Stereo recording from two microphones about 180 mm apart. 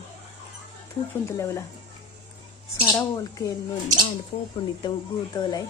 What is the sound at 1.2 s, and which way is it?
Speech, 15° left (ahead or behind).